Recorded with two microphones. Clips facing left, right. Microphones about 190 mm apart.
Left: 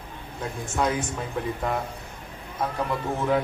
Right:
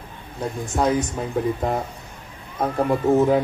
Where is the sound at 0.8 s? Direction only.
40° right (ahead or behind).